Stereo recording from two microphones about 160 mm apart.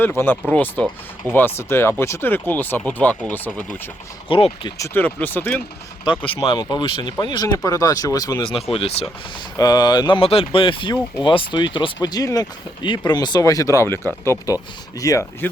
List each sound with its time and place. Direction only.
0.0 s speech: 15° left (ahead or behind)
4.3 s speech: 35° left (ahead or behind)
4.8 s speech: 10° left (ahead or behind)
6.1 s speech: 35° left (ahead or behind)
8.7 s speech: 40° left (ahead or behind)
9.6 s speech: 25° left (ahead or behind)